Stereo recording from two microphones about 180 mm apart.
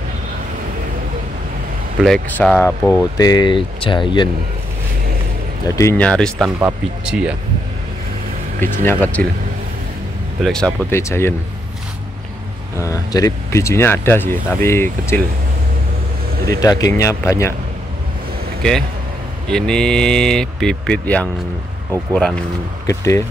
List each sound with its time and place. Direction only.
2.0 s speech: centre (ahead or behind)
3.2 s speech: 20° left (ahead or behind)
5.8 s speech: 10° left (ahead or behind); by 7.3 s 5° right (ahead or behind)
8.5 s speech: 10° left (ahead or behind)
10.4 s speech: 5° left (ahead or behind)
10.9 s speech: 15° left (ahead or behind)
12.7 s speech: 20° left (ahead or behind)
16.4 s speech: 20° left (ahead or behind)
18.6 s speech: 5° left (ahead or behind)
22.8 s speech: 15° left (ahead or behind)